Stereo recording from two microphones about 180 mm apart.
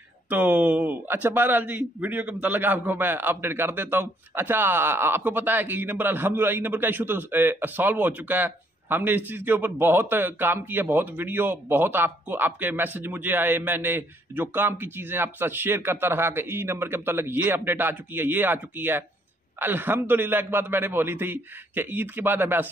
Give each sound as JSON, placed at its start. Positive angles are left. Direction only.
{"t": 0.3, "sound": "a man's voice", "side_deg": -10}